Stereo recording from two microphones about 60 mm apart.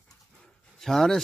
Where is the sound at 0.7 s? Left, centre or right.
Centre.